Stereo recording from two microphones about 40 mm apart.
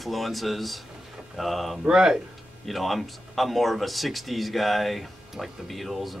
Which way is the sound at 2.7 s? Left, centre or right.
Centre.